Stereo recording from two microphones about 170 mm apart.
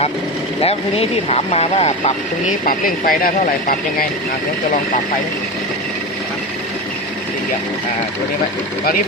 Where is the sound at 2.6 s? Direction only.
55° left (ahead or behind).